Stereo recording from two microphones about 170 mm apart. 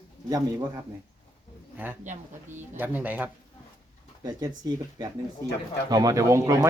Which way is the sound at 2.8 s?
10° right (ahead or behind).